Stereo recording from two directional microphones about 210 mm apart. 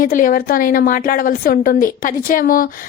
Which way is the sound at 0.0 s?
40° left (ahead or behind).